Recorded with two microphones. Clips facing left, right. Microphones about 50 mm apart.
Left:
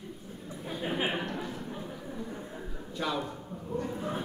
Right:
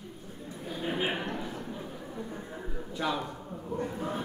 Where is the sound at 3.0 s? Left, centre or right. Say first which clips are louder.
Right 1 dB; centre.